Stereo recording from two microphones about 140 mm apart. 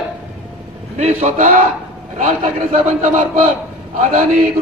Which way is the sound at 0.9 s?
55° right (ahead or behind).